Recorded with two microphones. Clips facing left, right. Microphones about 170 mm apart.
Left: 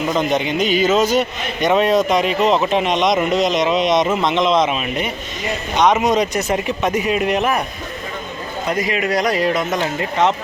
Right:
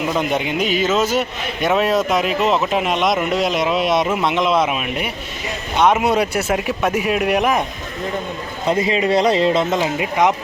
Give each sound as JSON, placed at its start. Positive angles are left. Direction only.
{"t": 0.1, "sound": "a man's voice", "side_deg": -5}
{"t": 8.6, "sound": "speech", "side_deg": -25}
{"t": 9.8, "sound": "speech", "side_deg": -10}